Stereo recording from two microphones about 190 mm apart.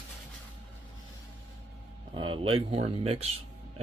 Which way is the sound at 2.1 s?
30° right (ahead or behind).